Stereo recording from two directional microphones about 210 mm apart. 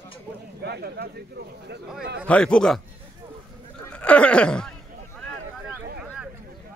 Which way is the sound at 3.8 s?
5° left (ahead or behind).